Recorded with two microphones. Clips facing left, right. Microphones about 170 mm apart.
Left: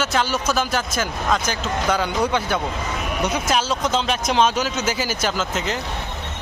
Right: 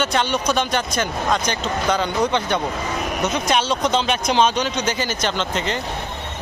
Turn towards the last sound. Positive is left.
turn(degrees=0)  # may be behind; listen again after turning